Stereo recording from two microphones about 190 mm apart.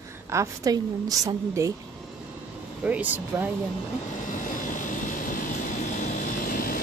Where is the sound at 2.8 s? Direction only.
10° right (ahead or behind).